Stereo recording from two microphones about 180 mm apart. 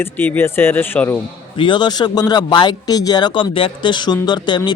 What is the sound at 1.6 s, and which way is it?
Speech, 25° left (ahead or behind).